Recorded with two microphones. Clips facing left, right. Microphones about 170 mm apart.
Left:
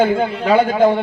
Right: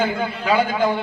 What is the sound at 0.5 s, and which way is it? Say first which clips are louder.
Speech: left 6 dB; 55° left (ahead or behind).